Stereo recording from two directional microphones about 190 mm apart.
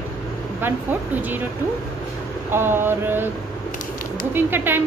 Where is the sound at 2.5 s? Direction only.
10° right (ahead or behind).